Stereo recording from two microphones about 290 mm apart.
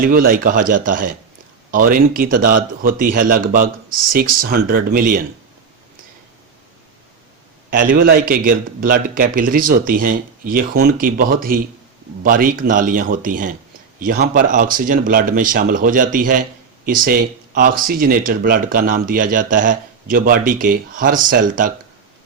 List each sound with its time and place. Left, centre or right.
0.0 s speech: right
7.7 s speech: right